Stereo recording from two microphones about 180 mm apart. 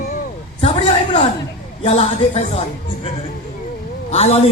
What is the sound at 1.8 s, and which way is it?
Speech, 35° left (ahead or behind).